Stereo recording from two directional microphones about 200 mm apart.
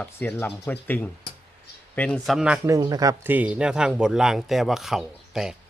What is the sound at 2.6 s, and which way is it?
A man's voice, 20° right (ahead or behind).